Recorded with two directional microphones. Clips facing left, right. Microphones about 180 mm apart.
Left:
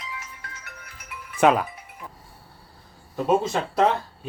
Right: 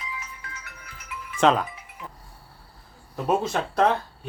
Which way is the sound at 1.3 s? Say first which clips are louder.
Left 2 dB; 10° left (ahead or behind).